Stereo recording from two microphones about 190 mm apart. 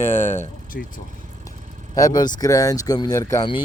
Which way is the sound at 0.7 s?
55° left (ahead or behind).